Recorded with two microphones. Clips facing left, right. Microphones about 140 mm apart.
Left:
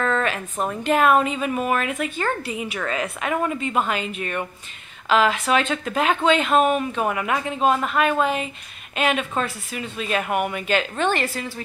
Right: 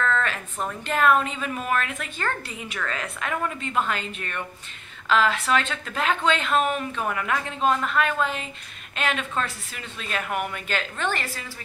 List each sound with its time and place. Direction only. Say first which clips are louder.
0.0 s a woman's voice: left 3 dB; 15° left (ahead or behind)